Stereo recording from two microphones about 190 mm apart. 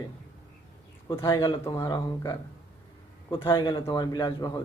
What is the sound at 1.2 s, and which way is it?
Speech, 25° left (ahead or behind).